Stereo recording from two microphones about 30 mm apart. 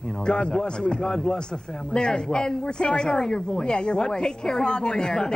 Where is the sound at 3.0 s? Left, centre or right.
Centre.